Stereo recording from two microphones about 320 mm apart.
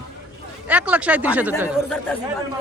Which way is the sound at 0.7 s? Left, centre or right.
Centre.